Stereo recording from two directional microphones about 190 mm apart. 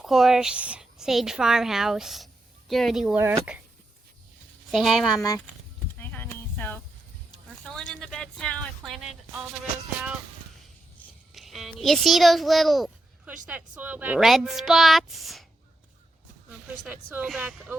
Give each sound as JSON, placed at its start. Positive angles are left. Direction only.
{"t": 0.0, "sound": "a woman's voice", "side_deg": 0}
{"t": 4.7, "sound": "a woman's voice", "side_deg": 0}
{"t": 6.0, "sound": "a sound", "side_deg": 10}
{"t": 7.6, "sound": "a woman's voice", "side_deg": 5}
{"t": 11.3, "sound": "a woman's voice", "side_deg": 0}
{"t": 16.8, "sound": "speech", "side_deg": -5}